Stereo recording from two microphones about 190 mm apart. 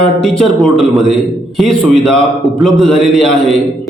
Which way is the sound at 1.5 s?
Centre (ahead or behind).